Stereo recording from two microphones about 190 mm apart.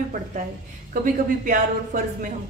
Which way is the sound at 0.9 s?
45° right (ahead or behind).